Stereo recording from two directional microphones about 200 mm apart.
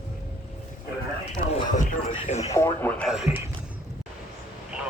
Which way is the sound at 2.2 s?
30° left (ahead or behind).